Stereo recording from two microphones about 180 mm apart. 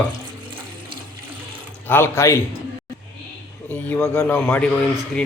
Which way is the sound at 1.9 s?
15° left (ahead or behind).